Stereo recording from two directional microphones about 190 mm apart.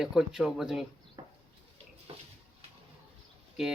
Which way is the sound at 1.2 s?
25° right (ahead or behind).